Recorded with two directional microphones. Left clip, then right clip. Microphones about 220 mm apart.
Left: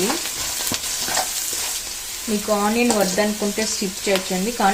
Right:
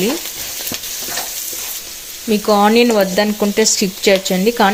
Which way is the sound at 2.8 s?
55° right (ahead or behind).